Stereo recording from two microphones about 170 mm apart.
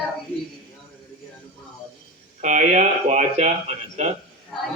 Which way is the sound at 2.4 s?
45° right (ahead or behind).